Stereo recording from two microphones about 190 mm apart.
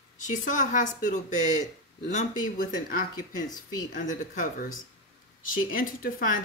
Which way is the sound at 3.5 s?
20° left (ahead or behind).